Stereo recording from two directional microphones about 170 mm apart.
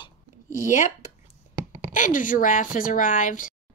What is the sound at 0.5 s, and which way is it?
Speech, 50° left (ahead or behind).